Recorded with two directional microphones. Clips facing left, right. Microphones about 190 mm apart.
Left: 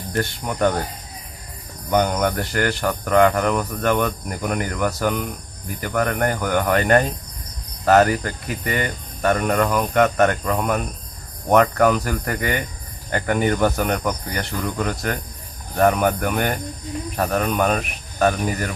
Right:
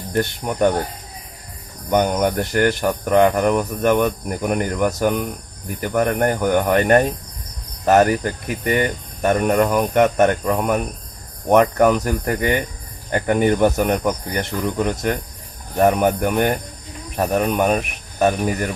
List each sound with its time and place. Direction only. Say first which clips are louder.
0.1 s speech: right 3 dB; 20° right (ahead or behind)
1.9 s speech: right 2 dB; 20° right (ahead or behind)